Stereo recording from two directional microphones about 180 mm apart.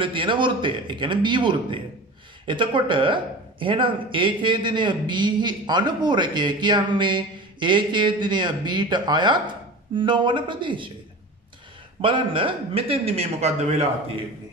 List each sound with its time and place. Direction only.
0.0 s speech: 25° right (ahead or behind)
12.0 s a man's voice: 30° right (ahead or behind)